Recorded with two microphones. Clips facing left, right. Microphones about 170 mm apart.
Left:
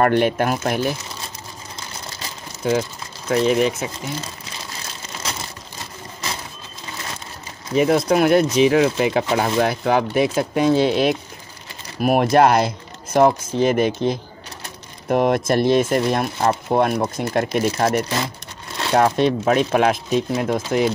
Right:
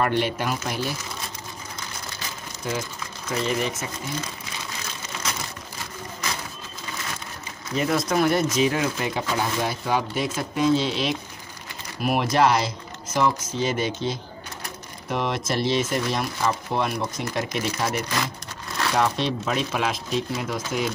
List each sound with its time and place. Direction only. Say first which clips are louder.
0.0 s speech: left 7 dB; 55° left (ahead or behind)
3.3 s speech: left 8 dB; 75° left (ahead or behind)
7.7 s speech: left 7 dB; 65° left (ahead or behind)
8.5 s speech: left 7 dB; 90° left
9.3 s speech: left 7 dB; 75° left (ahead or behind); by 18.0 s 55° left (ahead or behind)
18.0 s speech: left 3 dB; 30° left (ahead or behind)
18.9 s speech: left 8 dB; 55° left (ahead or behind)